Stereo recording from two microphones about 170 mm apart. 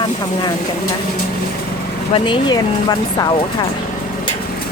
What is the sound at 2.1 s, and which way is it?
Speech, 30° left (ahead or behind).